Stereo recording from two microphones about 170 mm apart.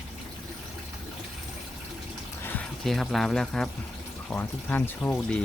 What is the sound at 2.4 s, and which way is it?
Speech, 10° left (ahead or behind).